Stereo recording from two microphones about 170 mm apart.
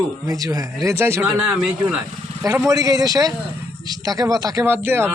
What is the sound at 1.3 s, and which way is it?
Speech, 5° right (ahead or behind).